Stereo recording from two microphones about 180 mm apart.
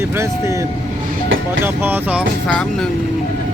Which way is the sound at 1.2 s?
90° right.